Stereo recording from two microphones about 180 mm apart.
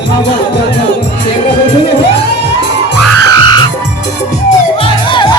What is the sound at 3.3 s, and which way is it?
Music, 25° left (ahead or behind).